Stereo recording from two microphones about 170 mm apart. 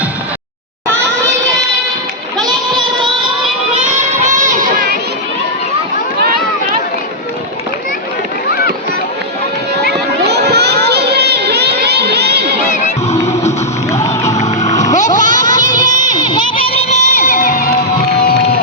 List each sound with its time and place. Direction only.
10.2 s crowd: 75° right (ahead or behind)
12.6 s music: 50° left (ahead or behind)
13.9 s music: 15° left (ahead or behind)
14.3 s music: 45° left (ahead or behind)
14.9 s splash: 45° left (ahead or behind)
15.2 s a sound: 25° left (ahead or behind)
16.0 s music: 25° left (ahead or behind); by 17.7 s 55° left (ahead or behind)